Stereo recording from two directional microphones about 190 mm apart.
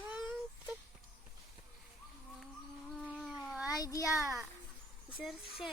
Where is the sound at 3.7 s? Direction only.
20° left (ahead or behind).